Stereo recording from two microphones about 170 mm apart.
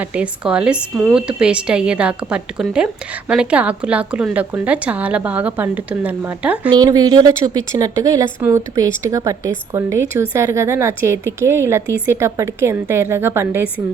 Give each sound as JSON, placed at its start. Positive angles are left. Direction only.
{"t": 0.0, "sound": "speech", "side_deg": -5}
{"t": 6.7, "sound": "speech", "side_deg": -20}